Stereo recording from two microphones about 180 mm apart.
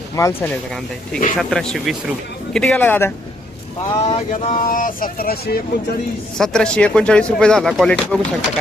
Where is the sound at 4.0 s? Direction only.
35° left (ahead or behind).